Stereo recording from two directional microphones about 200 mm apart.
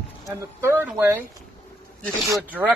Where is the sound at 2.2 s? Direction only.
15° right (ahead or behind).